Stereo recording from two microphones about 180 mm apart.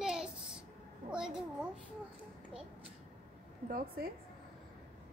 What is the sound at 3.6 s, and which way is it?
Speech, 55° right (ahead or behind).